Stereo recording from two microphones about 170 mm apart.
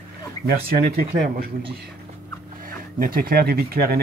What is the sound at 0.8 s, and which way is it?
Speech, 60° right (ahead or behind).